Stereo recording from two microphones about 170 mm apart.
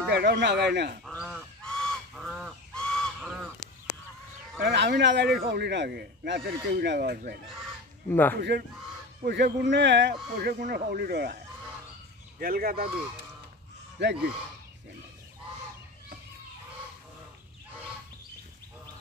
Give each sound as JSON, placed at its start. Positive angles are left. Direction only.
{"t": 0.1, "sound": "speech", "side_deg": -85}
{"t": 1.0, "sound": "goose", "side_deg": -5}
{"t": 4.6, "sound": "a man's voice", "side_deg": -80}
{"t": 8.1, "sound": "speech", "side_deg": 10}
{"t": 8.4, "sound": "a man's voice", "side_deg": -75}
{"t": 10.4, "sound": "speech", "side_deg": -60}
{"t": 14.0, "sound": "a man's voice", "side_deg": -90}